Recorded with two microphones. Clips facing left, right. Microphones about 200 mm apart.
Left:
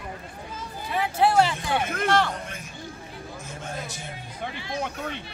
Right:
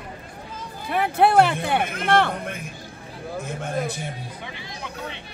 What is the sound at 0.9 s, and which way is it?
Music, 55° right (ahead or behind).